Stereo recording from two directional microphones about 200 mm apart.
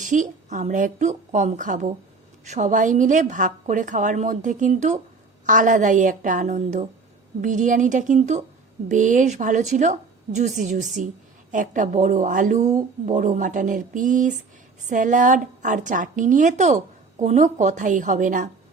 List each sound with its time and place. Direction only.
0.0 s a woman's voice: 40° right (ahead or behind)